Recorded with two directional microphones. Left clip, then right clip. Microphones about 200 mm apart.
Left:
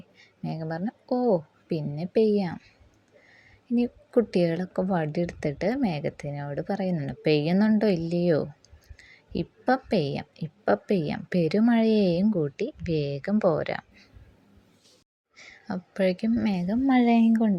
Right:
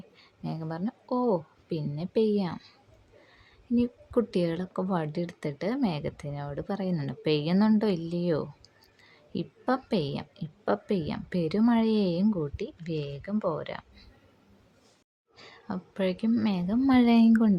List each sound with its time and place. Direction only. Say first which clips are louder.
0.2 s a sound: left 3 dB; 10° left (ahead or behind)
1.1 s speech: left 3 dB; 10° left (ahead or behind)
3.8 s a woman's voice: left 3 dB; 10° left (ahead or behind)
15.4 s speech: left 2 dB; 15° left (ahead or behind)